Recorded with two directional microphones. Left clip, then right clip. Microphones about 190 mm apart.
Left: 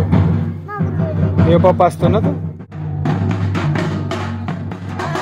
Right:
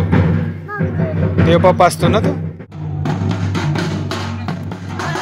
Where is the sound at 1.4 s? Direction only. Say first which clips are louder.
Right 1 dB; 5° left (ahead or behind).